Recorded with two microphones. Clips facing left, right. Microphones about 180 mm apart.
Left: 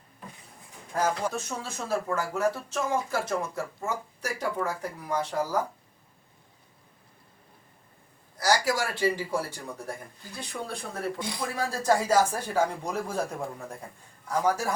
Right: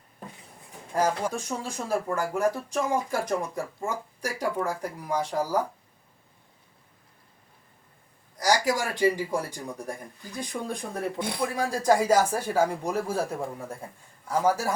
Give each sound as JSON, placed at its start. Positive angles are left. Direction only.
{"t": 0.9, "sound": "speech", "side_deg": -10}
{"t": 8.4, "sound": "speech", "side_deg": -15}
{"t": 11.2, "sound": "a man's voice", "side_deg": -60}
{"t": 11.5, "sound": "speech", "side_deg": -10}